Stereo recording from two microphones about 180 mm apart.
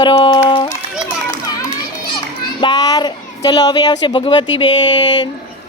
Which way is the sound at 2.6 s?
20° left (ahead or behind).